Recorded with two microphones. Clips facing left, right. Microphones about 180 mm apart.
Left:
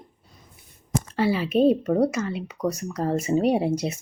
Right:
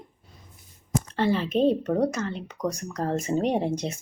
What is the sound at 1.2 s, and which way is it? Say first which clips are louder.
Speech: left 2 dB; 10° left (ahead or behind).